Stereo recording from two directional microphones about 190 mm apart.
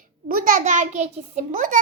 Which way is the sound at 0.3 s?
50° right (ahead or behind).